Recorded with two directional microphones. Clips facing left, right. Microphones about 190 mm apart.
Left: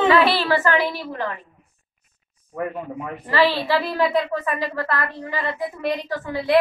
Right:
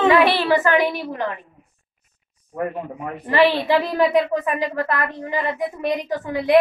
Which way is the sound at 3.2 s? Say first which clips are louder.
Right 3 dB; 20° right (ahead or behind).